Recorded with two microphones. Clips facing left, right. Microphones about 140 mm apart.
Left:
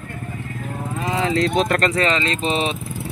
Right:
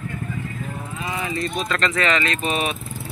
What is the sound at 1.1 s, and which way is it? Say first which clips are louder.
Speech: left 8 dB; 90° left.